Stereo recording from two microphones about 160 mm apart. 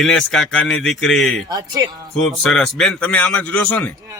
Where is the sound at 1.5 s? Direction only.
25° right (ahead or behind).